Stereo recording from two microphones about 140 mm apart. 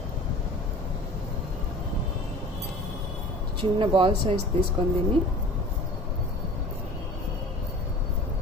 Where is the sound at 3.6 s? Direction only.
35° right (ahead or behind).